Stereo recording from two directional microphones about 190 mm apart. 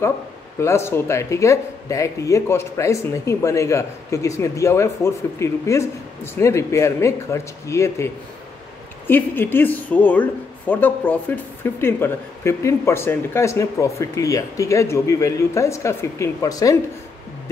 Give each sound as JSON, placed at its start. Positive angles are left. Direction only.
{"t": 0.6, "sound": "speech", "side_deg": 15}